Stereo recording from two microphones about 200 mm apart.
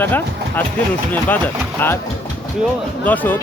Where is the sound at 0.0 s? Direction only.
10° left (ahead or behind).